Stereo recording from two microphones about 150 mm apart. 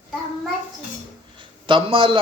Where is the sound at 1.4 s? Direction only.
35° right (ahead or behind).